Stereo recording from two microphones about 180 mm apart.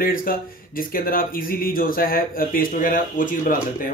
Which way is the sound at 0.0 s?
55° left (ahead or behind).